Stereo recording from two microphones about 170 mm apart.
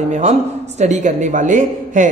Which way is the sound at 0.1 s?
40° right (ahead or behind).